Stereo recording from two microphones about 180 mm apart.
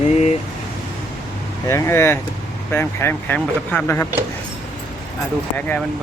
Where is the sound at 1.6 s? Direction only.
15° left (ahead or behind).